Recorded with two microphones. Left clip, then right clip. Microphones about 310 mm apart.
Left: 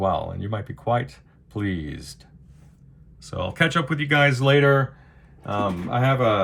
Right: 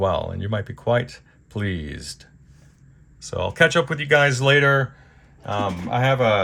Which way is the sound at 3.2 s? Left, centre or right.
Centre.